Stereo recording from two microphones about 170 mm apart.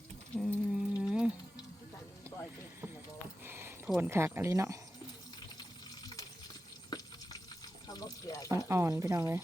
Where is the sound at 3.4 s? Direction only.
15° right (ahead or behind).